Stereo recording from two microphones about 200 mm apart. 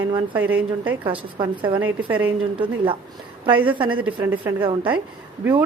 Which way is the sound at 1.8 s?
10° right (ahead or behind).